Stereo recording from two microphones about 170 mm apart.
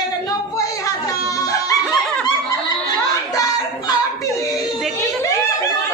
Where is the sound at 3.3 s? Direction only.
20° left (ahead or behind).